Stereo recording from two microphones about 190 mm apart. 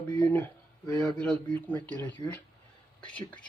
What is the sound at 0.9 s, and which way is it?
Speech, 5° left (ahead or behind).